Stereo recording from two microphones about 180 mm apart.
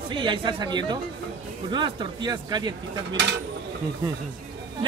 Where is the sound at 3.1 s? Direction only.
70° right (ahead or behind).